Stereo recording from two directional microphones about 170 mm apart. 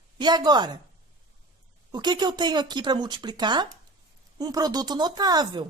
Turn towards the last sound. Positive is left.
turn(degrees=-25)  # may be behind; listen again after turning